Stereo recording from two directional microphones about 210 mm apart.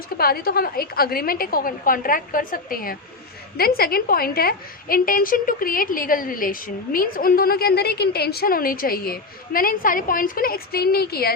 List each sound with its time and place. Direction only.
0.2 s a woman's voice: 45° left (ahead or behind)